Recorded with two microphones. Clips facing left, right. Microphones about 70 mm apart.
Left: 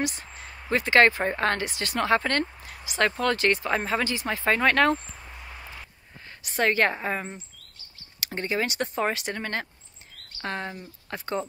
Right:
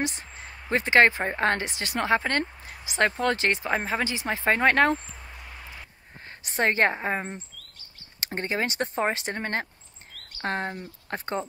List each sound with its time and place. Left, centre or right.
0.0 s speech: right
6.4 s speech: right